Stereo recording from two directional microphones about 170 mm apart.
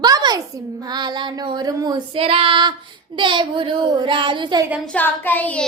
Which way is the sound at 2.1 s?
35° right (ahead or behind).